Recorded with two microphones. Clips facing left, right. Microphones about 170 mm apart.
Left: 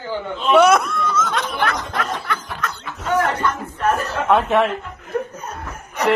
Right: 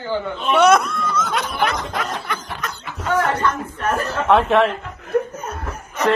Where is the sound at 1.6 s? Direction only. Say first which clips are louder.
Even; 15° right (ahead or behind).